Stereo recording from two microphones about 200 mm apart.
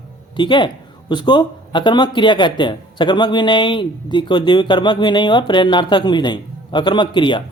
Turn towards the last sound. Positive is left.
turn(degrees=25)  # may be behind; listen again after turning